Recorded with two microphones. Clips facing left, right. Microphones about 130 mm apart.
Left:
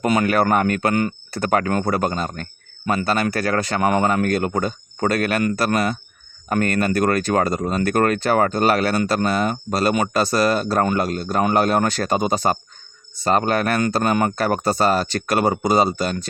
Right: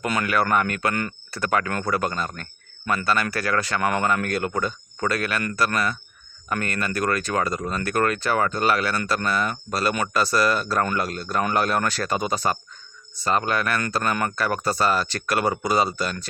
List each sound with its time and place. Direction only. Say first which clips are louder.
0.1 s speech: left 4 dB; 30° left (ahead or behind)
1.5 s speech: left 4 dB; 35° left (ahead or behind)